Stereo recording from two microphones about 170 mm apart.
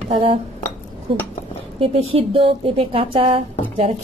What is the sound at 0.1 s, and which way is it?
A woman's voice, 30° right (ahead or behind).